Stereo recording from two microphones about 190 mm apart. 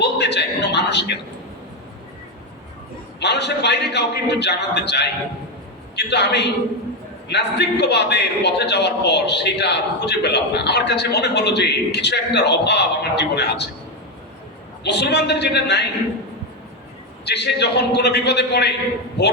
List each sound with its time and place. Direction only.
0.0 s a sound: 65° left (ahead or behind)
3.2 s a man's voice: 65° left (ahead or behind)
14.8 s a man's voice: 65° left (ahead or behind)
17.2 s a man's voice: 60° left (ahead or behind)